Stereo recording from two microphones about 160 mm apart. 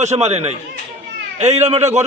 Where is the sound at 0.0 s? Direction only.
45° right (ahead or behind).